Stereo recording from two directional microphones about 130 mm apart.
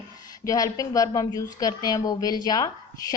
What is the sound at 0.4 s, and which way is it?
Speech, 25° left (ahead or behind).